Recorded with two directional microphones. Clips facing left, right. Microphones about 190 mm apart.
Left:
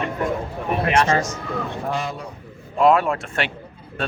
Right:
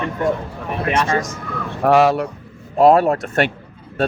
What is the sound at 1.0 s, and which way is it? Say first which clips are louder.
Speech: even; 25° left (ahead or behind).